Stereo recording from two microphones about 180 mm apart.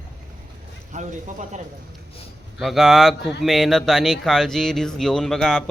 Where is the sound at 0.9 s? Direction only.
40° right (ahead or behind).